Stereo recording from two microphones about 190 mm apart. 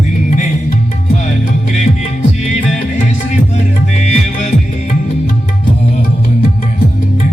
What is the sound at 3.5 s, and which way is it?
Music, 35° left (ahead or behind).